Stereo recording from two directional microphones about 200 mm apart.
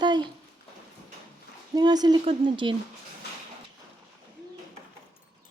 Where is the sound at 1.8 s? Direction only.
20° right (ahead or behind).